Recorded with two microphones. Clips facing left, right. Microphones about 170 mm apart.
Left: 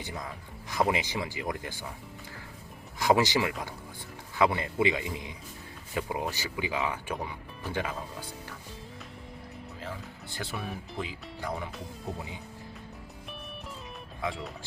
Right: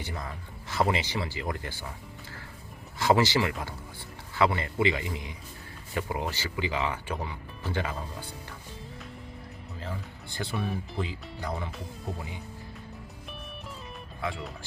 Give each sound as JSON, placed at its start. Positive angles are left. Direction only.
{"t": 0.9, "sound": "speech", "side_deg": 15}
{"t": 3.0, "sound": "speech", "side_deg": 15}
{"t": 9.8, "sound": "speech", "side_deg": 5}
{"t": 14.3, "sound": "speech", "side_deg": 0}